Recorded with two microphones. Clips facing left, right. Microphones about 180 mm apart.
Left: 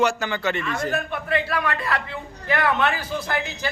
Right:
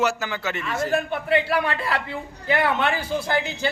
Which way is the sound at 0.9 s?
30° right (ahead or behind).